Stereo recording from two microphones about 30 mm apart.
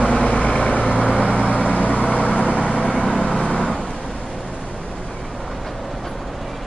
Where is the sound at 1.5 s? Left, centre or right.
Left.